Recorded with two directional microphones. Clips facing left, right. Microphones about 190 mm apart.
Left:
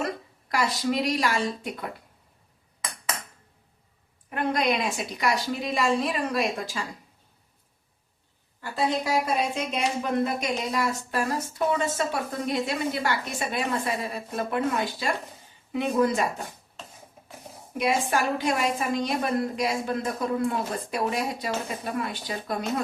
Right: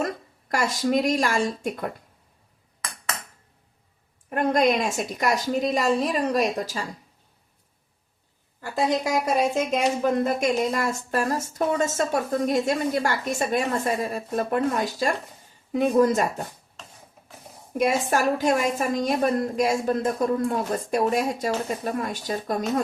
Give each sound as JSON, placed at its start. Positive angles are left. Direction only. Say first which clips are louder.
{"t": 0.0, "sound": "speech", "louder": "right 2 dB", "side_deg": -45}
{"t": 4.3, "sound": "speech", "louder": "right 5 dB", "side_deg": -45}
{"t": 8.9, "sound": "speech", "louder": "right 3 dB", "side_deg": -45}
{"t": 17.7, "sound": "speech", "louder": "right 3 dB", "side_deg": -45}